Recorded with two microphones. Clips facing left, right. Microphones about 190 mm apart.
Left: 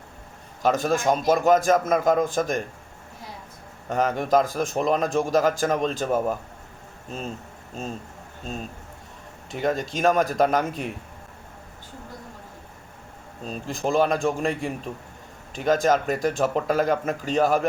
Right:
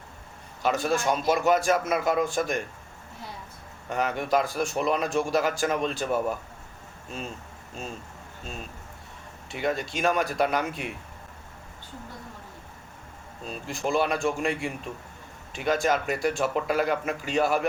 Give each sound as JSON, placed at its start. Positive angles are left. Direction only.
{"t": 0.6, "sound": "a man's voice", "side_deg": 45}
{"t": 3.8, "sound": "a man's voice", "side_deg": 40}
{"t": 9.5, "sound": "a man's voice", "side_deg": 40}
{"t": 13.4, "sound": "speech", "side_deg": 40}